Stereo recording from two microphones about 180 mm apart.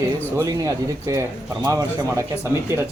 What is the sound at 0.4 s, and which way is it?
Speech, 20° right (ahead or behind).